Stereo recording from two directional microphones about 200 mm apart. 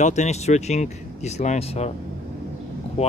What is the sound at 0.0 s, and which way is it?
Speech, 35° left (ahead or behind).